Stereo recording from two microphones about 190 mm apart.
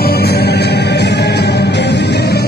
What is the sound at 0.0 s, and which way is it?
Music, 55° left (ahead or behind).